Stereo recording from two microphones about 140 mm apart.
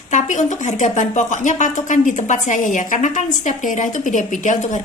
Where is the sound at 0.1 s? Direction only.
60° left (ahead or behind).